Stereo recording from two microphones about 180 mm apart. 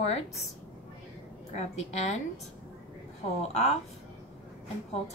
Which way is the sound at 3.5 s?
35° left (ahead or behind).